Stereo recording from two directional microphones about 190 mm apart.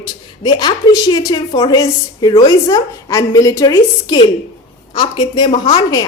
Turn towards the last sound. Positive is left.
turn(degrees=25)  # may be behind; listen again after turning